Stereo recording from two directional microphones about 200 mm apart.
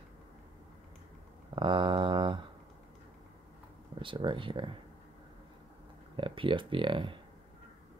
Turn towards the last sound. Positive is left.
turn(degrees=-25)  # may be behind; listen again after turning